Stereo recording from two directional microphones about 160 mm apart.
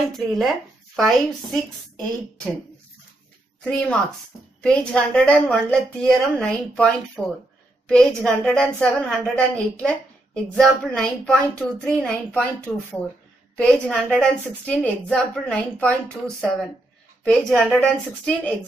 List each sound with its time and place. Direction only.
0.1 s a woman's voice: centre (ahead or behind)
3.6 s a woman's voice: 10° left (ahead or behind)